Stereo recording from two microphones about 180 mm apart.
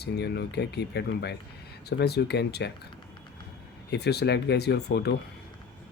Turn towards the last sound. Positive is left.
turn(degrees=65)  # may be behind; listen again after turning